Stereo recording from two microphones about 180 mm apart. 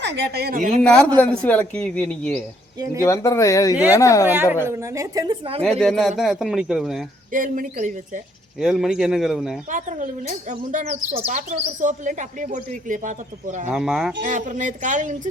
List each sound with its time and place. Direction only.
0.0 s speech: 70° right (ahead or behind); by 0.8 s 50° right (ahead or behind)
0.8 s speech: 5° left (ahead or behind)
3.0 s speech: 15° left (ahead or behind)
4.3 s speech: 10° right (ahead or behind)
5.6 s speech: 5° left (ahead or behind)
7.3 s speech: 50° right (ahead or behind)
8.6 s speech: 5° right (ahead or behind)
9.7 s speech: 45° right (ahead or behind)
13.7 s speech: centre (ahead or behind)
14.2 s speech: 45° right (ahead or behind)